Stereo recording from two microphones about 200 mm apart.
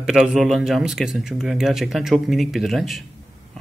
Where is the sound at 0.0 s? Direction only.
Centre (ahead or behind).